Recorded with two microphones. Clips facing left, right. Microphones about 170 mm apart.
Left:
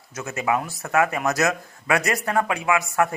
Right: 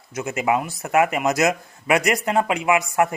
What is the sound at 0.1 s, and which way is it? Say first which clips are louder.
Speech: right 3 dB; 15° right (ahead or behind).